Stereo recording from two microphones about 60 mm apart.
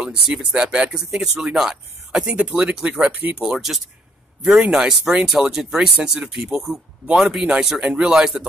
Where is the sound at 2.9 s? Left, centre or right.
Right.